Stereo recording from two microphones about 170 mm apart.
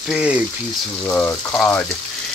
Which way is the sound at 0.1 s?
5° right (ahead or behind).